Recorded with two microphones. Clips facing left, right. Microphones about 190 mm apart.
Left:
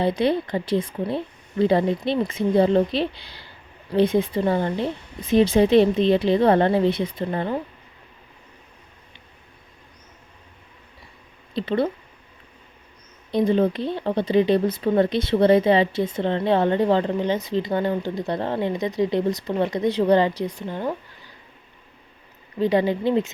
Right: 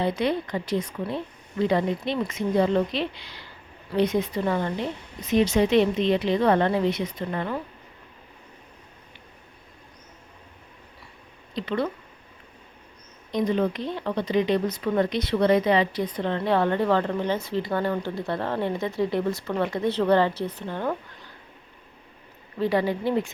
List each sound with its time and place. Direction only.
0.0 s a woman's voice: 30° left (ahead or behind)
11.5 s a woman's voice: 30° left (ahead or behind)
13.3 s a woman's voice: 30° left (ahead or behind); by 20.9 s 15° left (ahead or behind)
22.5 s speech: 20° left (ahead or behind)